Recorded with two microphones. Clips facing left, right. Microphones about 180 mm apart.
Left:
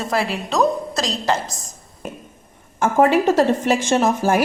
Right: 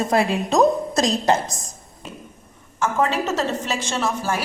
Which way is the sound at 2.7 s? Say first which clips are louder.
Left 6 dB; 50° left (ahead or behind).